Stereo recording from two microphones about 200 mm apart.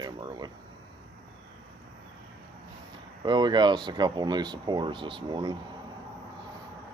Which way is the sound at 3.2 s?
20° right (ahead or behind).